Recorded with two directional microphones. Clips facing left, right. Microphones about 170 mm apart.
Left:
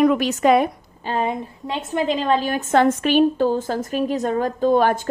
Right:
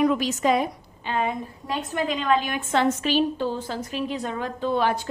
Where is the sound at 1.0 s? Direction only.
35° left (ahead or behind).